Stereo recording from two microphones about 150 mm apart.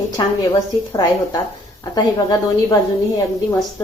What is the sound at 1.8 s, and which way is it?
Speech, 25° left (ahead or behind).